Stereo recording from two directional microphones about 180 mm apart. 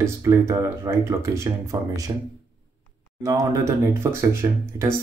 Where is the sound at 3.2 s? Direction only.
20° right (ahead or behind).